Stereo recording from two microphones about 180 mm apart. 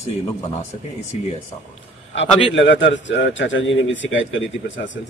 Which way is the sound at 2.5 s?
85° left.